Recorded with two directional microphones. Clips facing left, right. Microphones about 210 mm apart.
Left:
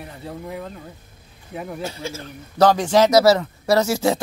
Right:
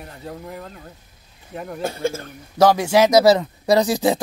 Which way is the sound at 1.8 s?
55° right (ahead or behind).